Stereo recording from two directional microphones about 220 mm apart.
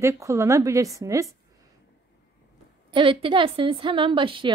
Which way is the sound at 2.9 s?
25° right (ahead or behind).